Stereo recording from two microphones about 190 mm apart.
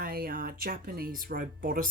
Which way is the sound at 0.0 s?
50° right (ahead or behind).